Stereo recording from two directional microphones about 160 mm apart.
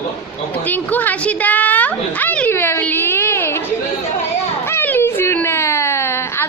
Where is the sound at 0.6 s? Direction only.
10° left (ahead or behind).